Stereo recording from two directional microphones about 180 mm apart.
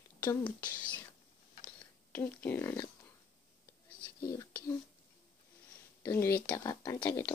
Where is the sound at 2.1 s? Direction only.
10° left (ahead or behind).